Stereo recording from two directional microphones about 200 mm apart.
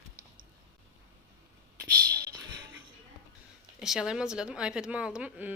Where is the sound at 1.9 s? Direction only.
50° right (ahead or behind).